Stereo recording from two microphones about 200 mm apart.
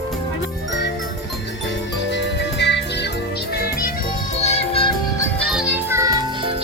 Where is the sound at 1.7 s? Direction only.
60° left (ahead or behind).